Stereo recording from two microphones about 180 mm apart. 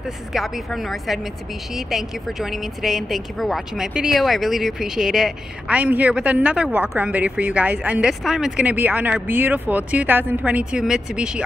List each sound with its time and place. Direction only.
0.3 s a woman's voice: centre (ahead or behind)